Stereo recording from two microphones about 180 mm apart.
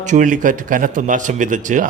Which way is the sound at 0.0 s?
45° right (ahead or behind).